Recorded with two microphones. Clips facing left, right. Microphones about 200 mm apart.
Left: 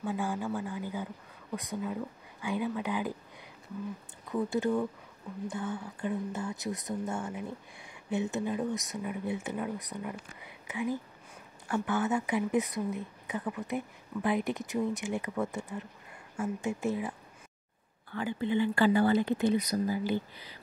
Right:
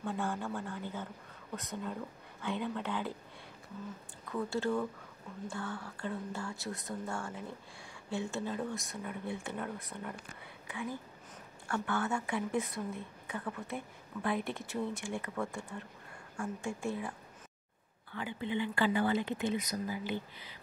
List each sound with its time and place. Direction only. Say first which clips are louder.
0.0 s speech: left 3 dB; 10° left (ahead or behind)
4.3 s speech: left 4 dB; 15° left (ahead or behind)
18.1 s speech: left 6 dB; 40° left (ahead or behind)